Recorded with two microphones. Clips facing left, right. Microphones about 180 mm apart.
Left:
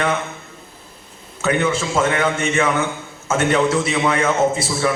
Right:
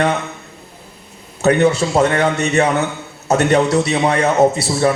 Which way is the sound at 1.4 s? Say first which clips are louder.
Right 6 dB; 40° right (ahead or behind).